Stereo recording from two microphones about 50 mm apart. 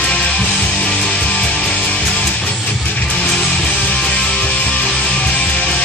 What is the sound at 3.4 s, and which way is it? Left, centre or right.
Music, centre.